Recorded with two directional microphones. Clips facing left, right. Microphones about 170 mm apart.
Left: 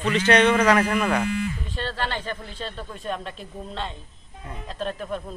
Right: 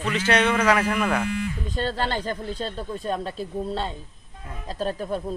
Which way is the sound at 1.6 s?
40° right (ahead or behind).